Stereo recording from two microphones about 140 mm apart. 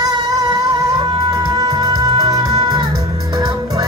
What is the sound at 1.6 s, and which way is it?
Music, 25° right (ahead or behind).